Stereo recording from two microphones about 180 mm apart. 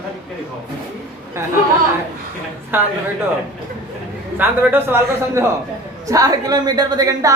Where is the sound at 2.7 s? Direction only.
10° right (ahead or behind).